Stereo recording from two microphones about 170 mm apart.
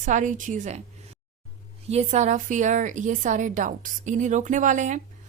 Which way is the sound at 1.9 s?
40° right (ahead or behind).